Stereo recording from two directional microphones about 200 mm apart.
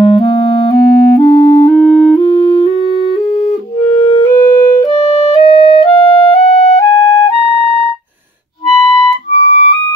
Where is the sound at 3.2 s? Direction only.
Centre (ahead or behind).